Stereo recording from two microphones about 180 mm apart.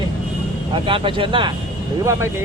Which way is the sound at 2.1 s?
15° right (ahead or behind).